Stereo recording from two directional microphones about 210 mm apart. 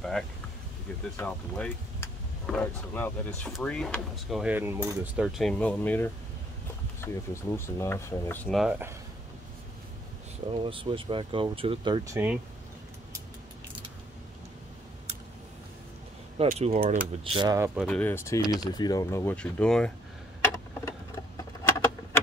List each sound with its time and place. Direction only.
1.1 s speech: 10° left (ahead or behind); by 8.9 s 5° right (ahead or behind)
10.5 s speech: 25° right (ahead or behind)
16.3 s speech: 30° right (ahead or behind)
17.7 s speech: 5° left (ahead or behind)
20.4 s a sound: 15° left (ahead or behind)